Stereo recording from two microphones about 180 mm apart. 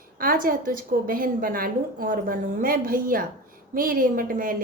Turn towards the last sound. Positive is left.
turn(degrees=-50)  # may be behind; listen again after turning